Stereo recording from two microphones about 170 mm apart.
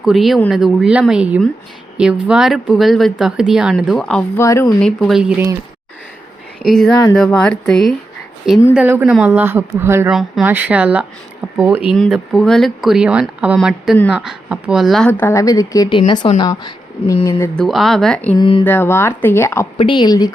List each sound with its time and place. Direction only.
0.0 s speech: centre (ahead or behind)
4.4 s speech: 15° left (ahead or behind)
4.8 s speech: 5° left (ahead or behind)
6.6 s speech: 5° left (ahead or behind)
8.7 s a woman's voice: 10° right (ahead or behind)
10.1 s a woman's voice: 5° right (ahead or behind)
11.9 s speech: 5° left (ahead or behind)
15.2 s speech: 15° left (ahead or behind)
17.6 s speech: centre (ahead or behind)
18.3 s speech: 30° left (ahead or behind)
18.6 s speech: 10° left (ahead or behind)
19.8 s speech: 25° left (ahead or behind)